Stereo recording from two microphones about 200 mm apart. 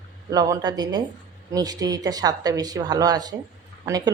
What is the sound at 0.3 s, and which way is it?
Speech, 15° right (ahead or behind).